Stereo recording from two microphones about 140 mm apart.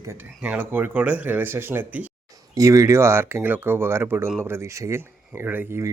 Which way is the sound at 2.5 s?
25° right (ahead or behind).